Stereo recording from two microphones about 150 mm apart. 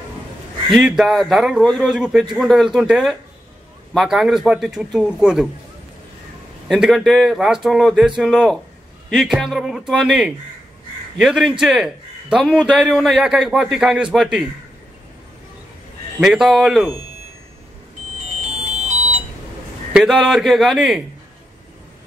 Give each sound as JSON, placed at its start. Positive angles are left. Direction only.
{"t": 0.7, "sound": "a man's voice", "side_deg": 0}
{"t": 6.7, "sound": "a man's voice", "side_deg": 0}
{"t": 16.2, "sound": "a man's voice", "side_deg": -5}
{"t": 18.6, "sound": "music", "side_deg": -50}
{"t": 19.9, "sound": "a man's voice", "side_deg": -5}